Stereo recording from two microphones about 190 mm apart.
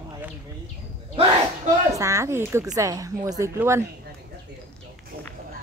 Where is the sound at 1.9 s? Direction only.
15° right (ahead or behind).